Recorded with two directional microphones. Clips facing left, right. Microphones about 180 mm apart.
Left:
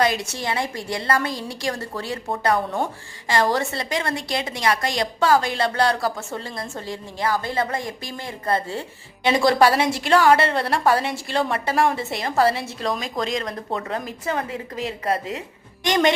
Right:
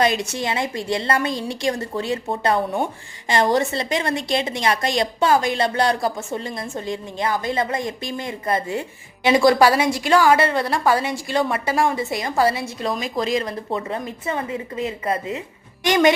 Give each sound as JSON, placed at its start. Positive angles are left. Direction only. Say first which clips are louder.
{"t": 0.0, "sound": "a woman's voice", "louder": "right 2 dB", "side_deg": -20}
{"t": 9.4, "sound": "speech", "louder": "right 1 dB", "side_deg": 0}